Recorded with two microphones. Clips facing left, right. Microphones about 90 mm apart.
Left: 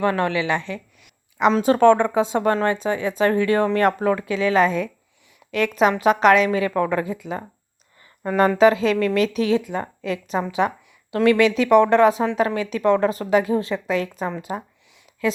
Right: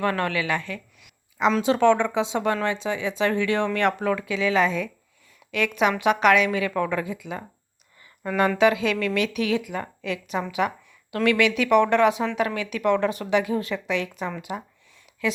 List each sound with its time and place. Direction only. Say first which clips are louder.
0.0 s a woman's voice: left 4 dB; 20° left (ahead or behind)
1.6 s a woman's voice: left 5 dB; 45° left (ahead or behind)